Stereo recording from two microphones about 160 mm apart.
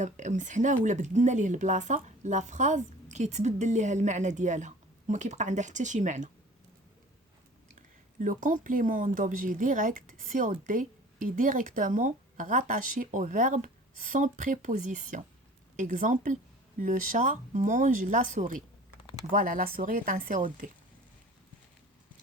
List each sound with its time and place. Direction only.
0.0 s speech: 50° right (ahead or behind)
7.8 s speech: 55° right (ahead or behind)